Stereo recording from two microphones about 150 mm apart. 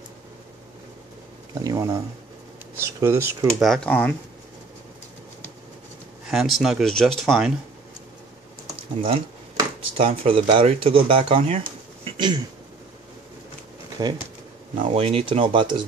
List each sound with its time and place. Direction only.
1.5 s speech: 25° right (ahead or behind)
3.5 s speech: centre (ahead or behind)
6.2 s speech: centre (ahead or behind)
9.9 s speech: 40° right (ahead or behind)
12.0 s a sound: 30° right (ahead or behind)
14.0 s speech: 30° right (ahead or behind)
14.8 s speech: 40° right (ahead or behind)